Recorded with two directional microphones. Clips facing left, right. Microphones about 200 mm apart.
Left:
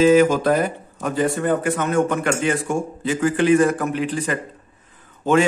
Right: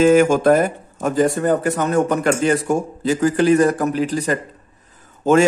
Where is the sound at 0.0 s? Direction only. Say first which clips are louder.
Right 2 dB; 50° right (ahead or behind).